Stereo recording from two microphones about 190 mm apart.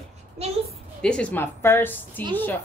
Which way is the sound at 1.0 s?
5° left (ahead or behind).